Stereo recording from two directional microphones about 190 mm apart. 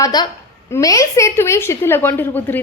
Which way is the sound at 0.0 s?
20° left (ahead or behind).